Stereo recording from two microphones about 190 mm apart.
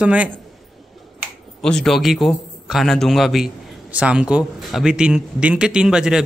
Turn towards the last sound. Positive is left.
turn(degrees=-5)  # may be behind; listen again after turning